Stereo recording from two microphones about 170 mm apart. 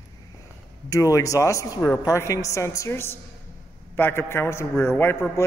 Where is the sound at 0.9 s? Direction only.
20° left (ahead or behind).